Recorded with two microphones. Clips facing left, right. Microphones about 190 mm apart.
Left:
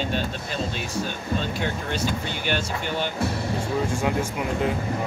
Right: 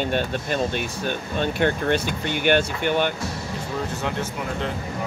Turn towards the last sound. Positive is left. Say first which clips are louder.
# left 3 dB
turn(degrees=10)  # may be behind; listen again after turning